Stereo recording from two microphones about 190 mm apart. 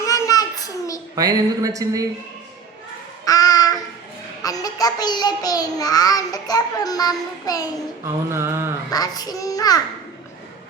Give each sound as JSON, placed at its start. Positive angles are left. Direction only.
{"t": 0.0, "sound": "child singing", "side_deg": 15}
{"t": 1.1, "sound": "speech", "side_deg": -20}
{"t": 3.2, "sound": "child singing", "side_deg": 20}
{"t": 8.0, "sound": "speech", "side_deg": -15}
{"t": 8.9, "sound": "child singing", "side_deg": 20}